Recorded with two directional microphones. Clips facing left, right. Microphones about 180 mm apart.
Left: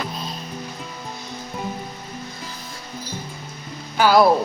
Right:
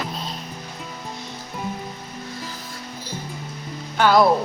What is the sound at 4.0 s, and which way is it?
Speech, 5° left (ahead or behind).